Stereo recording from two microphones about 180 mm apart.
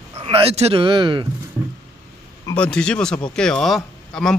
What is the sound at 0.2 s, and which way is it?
Speech, 30° right (ahead or behind).